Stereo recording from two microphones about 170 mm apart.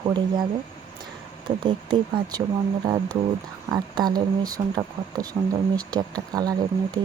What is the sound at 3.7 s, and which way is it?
Speech, 25° right (ahead or behind).